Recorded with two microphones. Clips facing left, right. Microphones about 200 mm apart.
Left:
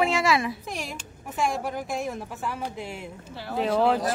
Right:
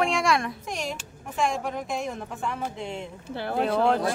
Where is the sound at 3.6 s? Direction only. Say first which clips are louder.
Left 1 dB; 5° left (ahead or behind).